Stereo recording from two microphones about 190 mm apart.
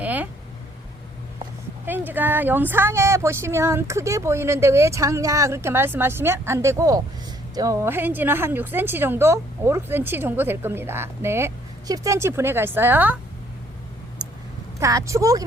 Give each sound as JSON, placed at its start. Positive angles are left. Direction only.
{"t": 0.0, "sound": "a sound", "side_deg": -10}
{"t": 1.9, "sound": "a woman's voice", "side_deg": -10}
{"t": 14.8, "sound": "a woman's voice", "side_deg": -15}